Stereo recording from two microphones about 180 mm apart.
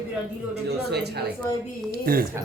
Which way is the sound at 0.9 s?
65° right (ahead or behind).